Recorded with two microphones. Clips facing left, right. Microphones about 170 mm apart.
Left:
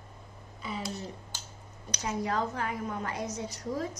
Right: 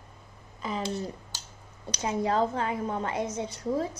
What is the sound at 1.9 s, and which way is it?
A woman's voice, 30° right (ahead or behind).